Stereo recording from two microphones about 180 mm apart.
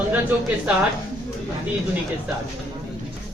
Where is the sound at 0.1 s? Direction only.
10° right (ahead or behind).